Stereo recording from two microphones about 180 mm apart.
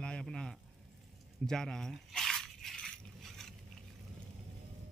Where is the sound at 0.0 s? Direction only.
5° left (ahead or behind).